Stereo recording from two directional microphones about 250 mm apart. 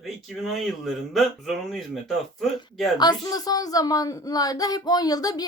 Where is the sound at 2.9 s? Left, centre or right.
Centre.